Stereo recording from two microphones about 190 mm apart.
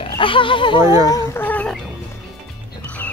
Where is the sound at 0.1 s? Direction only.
25° left (ahead or behind).